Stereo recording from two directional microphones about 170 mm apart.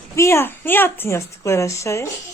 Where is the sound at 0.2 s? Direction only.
15° left (ahead or behind).